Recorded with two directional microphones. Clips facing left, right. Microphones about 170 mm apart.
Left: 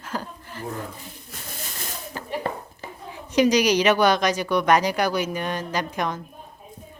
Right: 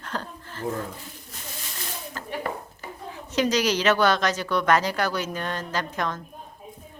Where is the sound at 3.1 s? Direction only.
15° left (ahead or behind).